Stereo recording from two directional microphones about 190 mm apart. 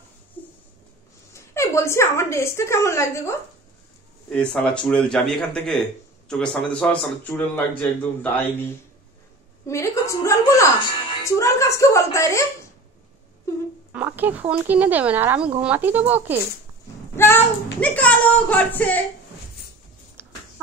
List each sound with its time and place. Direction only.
1.3 s a woman's voice: 15° left (ahead or behind)
4.3 s a man's voice: 5° left (ahead or behind)
9.7 s speech: 15° left (ahead or behind)
13.9 s speech: 10° right (ahead or behind)
17.2 s speech: 10° left (ahead or behind)